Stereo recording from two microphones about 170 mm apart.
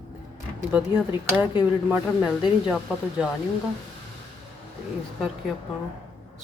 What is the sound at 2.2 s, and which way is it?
A woman's voice, 5° right (ahead or behind).